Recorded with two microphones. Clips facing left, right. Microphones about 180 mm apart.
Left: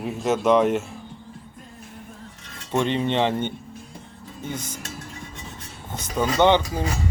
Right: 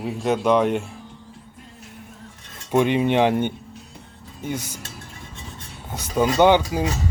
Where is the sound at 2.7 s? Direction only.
10° right (ahead or behind).